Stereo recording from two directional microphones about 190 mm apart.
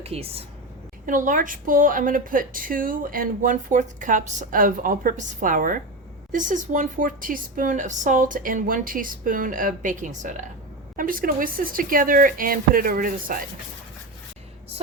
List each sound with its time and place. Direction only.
0.0 s speech: 30° right (ahead or behind)
1.0 s a woman's voice: 45° right (ahead or behind)